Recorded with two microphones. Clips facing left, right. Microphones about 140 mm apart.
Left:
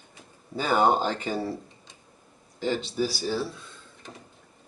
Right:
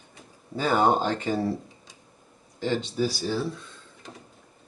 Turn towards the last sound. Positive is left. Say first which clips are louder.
# right 1 dB
turn(degrees=5)  # may be behind; listen again after turning